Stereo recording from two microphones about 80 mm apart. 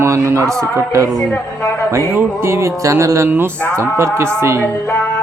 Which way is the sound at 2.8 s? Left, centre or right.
Right.